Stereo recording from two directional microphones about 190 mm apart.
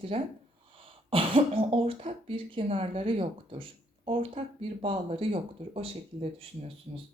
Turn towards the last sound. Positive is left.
turn(degrees=-30)  # may be behind; listen again after turning